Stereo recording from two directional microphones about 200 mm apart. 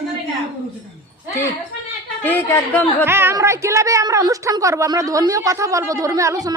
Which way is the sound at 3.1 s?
10° right (ahead or behind).